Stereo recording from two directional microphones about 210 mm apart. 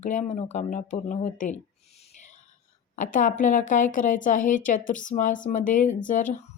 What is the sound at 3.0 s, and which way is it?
Speech, 40° left (ahead or behind).